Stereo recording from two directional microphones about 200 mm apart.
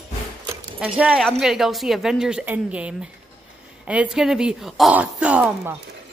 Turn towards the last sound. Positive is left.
turn(degrees=-5)  # may be behind; listen again after turning